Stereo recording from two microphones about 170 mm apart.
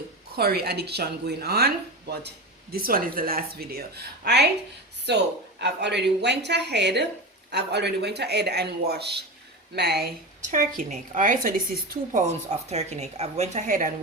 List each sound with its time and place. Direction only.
0.3 s speech: 65° right (ahead or behind)
2.7 s a woman's voice: 60° right (ahead or behind)
10.4 s a woman's voice: 45° right (ahead or behind)
12.5 s speech: 40° right (ahead or behind)